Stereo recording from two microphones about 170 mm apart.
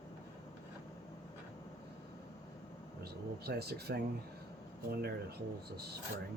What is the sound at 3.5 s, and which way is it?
Speech, 70° right (ahead or behind).